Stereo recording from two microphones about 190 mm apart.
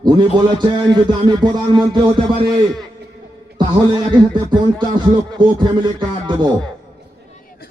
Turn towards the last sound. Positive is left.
turn(degrees=-25)  # may be behind; listen again after turning